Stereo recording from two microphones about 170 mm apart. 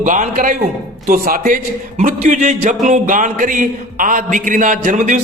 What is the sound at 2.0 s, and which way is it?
A man's voice, 50° right (ahead or behind).